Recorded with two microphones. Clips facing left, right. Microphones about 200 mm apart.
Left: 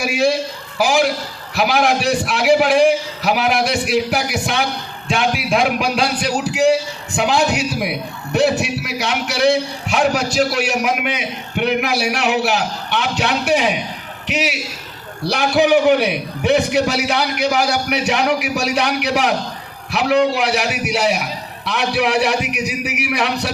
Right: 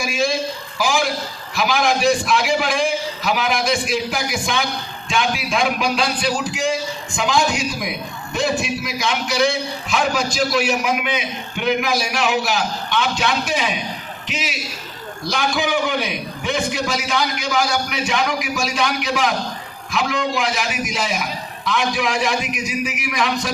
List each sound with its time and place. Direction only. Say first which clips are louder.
0.0 s a man's voice: left 4 dB; 65° left (ahead or behind)
5.0 s a sound: left 3 dB; 60° left (ahead or behind)
5.5 s a man's voice: left 3 dB; 60° left (ahead or behind)